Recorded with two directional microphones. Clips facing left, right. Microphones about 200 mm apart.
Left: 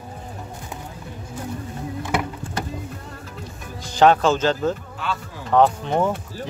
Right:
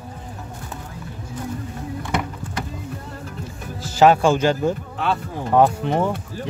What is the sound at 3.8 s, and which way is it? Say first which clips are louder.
Speech: right 1 dB; 5° right (ahead or behind).